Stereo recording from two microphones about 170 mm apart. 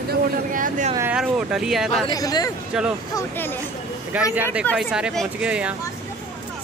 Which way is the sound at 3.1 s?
10° left (ahead or behind).